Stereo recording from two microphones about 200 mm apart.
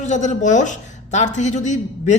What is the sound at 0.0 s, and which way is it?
A woman's voice, 35° left (ahead or behind).